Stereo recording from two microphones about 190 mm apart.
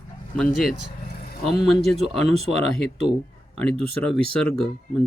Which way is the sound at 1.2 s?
50° left (ahead or behind).